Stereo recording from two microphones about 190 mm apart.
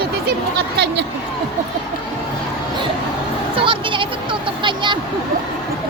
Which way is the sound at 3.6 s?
25° right (ahead or behind).